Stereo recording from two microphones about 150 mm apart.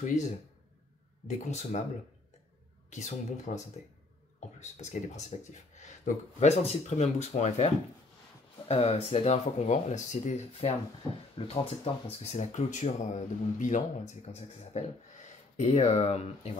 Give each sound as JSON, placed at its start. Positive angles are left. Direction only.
{"t": 0.0, "sound": "speech", "side_deg": 55}
{"t": 2.9, "sound": "speech", "side_deg": 55}